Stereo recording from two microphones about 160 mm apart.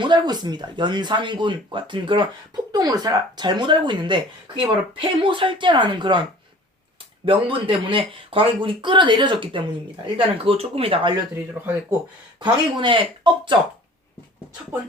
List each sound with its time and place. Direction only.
0.0 s speech: 25° right (ahead or behind)
7.3 s speech: 35° right (ahead or behind)
12.4 s speech: 30° right (ahead or behind)